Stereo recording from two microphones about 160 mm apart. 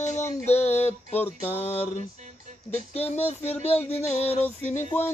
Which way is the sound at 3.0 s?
40° left (ahead or behind).